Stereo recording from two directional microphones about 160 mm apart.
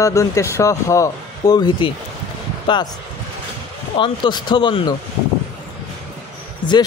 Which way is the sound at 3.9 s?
30° left (ahead or behind).